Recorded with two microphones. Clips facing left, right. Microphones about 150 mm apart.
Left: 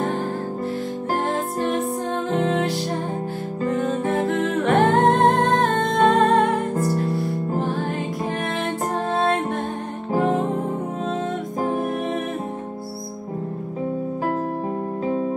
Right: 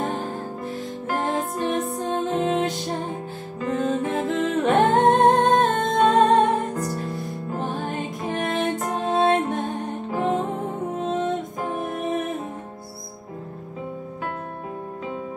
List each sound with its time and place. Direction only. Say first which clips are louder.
4.3 s music: right 2 dB; 20° right (ahead or behind)
6.7 s music: left 5 dB; 45° left (ahead or behind)
9.2 s music: right 3 dB; 20° right (ahead or behind)